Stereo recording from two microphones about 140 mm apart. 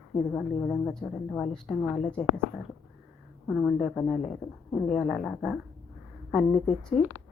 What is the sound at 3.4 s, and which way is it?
Speech, centre (ahead or behind).